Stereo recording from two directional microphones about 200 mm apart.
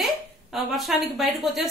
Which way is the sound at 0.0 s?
Centre (ahead or behind).